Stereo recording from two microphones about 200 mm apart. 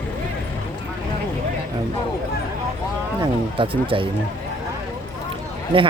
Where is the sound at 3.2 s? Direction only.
25° right (ahead or behind).